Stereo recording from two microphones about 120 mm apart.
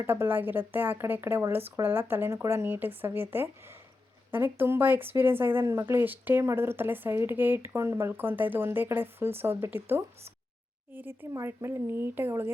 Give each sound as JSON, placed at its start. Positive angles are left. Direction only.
{"t": 0.0, "sound": "speech", "side_deg": -20}